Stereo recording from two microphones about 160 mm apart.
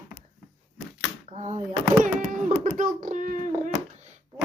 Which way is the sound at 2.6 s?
50° right (ahead or behind).